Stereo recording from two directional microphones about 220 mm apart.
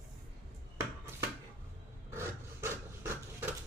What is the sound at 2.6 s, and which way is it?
Pant, 10° right (ahead or behind).